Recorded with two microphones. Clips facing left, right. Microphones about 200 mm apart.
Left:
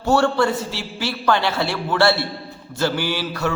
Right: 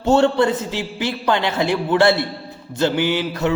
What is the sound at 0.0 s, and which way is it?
A man's voice, 20° right (ahead or behind).